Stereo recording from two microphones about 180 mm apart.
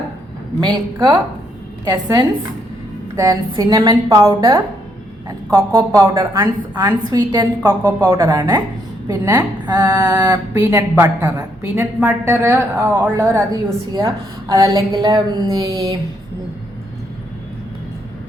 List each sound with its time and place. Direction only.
0.6 s a woman's voice: 25° right (ahead or behind)